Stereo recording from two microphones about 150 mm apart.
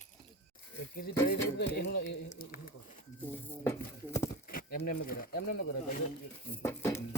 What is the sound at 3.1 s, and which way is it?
Speech, 15° left (ahead or behind).